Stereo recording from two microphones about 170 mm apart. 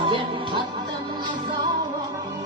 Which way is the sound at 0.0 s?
30° right (ahead or behind).